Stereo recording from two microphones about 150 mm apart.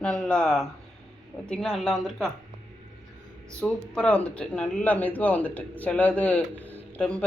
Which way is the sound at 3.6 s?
10° left (ahead or behind).